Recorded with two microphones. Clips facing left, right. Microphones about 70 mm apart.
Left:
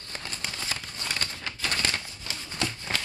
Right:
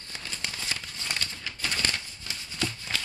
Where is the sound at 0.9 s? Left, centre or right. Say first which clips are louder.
Left 1 dB; left.